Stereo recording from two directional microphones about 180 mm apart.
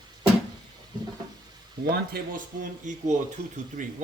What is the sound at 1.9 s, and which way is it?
Speech, 55° right (ahead or behind).